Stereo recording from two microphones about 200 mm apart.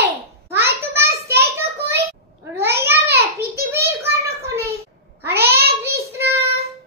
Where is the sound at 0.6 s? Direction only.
15° right (ahead or behind).